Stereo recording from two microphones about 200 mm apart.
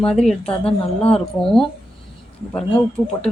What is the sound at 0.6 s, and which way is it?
Speech, 30° left (ahead or behind).